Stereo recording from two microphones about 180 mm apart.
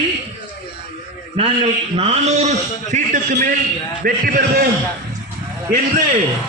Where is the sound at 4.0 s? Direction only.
55° right (ahead or behind).